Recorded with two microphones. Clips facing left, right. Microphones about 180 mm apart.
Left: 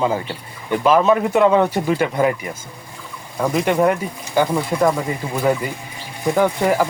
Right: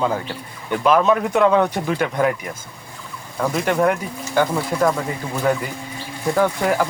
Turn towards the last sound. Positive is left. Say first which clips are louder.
# left 2 dB
turn(degrees=10)  # may be behind; listen again after turning